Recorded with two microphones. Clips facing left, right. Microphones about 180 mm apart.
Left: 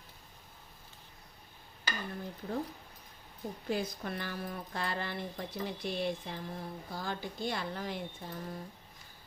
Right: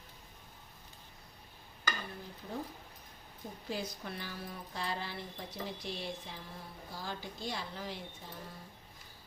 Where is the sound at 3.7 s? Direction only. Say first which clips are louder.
Left 5 dB; 55° left (ahead or behind).